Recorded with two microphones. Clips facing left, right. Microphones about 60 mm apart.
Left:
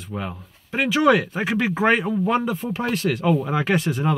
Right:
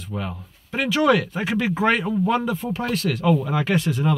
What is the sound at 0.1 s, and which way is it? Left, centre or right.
Speech, centre.